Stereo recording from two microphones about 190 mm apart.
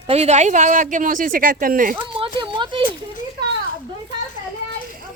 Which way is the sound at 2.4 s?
25° right (ahead or behind).